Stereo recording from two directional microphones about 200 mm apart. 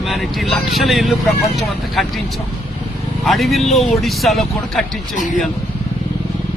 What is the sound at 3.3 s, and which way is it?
Speech, centre (ahead or behind).